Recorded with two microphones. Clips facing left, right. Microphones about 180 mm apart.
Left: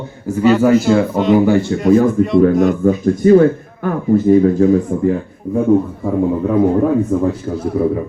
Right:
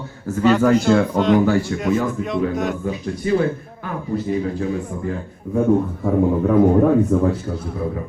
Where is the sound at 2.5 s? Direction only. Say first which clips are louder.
Left 9 dB; centre (ahead or behind).